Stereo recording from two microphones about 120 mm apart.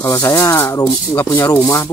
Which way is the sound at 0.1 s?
25° left (ahead or behind).